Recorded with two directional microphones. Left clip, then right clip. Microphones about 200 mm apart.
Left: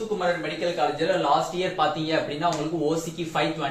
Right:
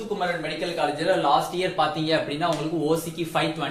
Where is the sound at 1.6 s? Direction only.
60° right (ahead or behind).